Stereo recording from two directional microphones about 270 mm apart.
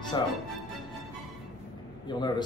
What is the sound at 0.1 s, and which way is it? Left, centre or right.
Speech, centre.